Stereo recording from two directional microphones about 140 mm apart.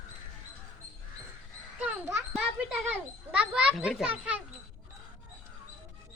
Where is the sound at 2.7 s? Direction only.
10° right (ahead or behind).